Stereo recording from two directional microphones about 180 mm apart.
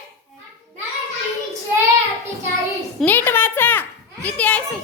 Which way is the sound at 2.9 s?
10° left (ahead or behind).